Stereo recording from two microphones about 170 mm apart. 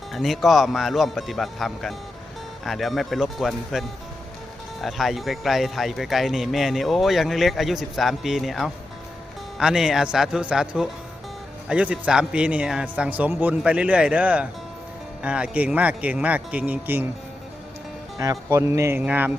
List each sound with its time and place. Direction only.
0.1 s a man's voice: centre (ahead or behind)
18.2 s a man's voice: 15° right (ahead or behind)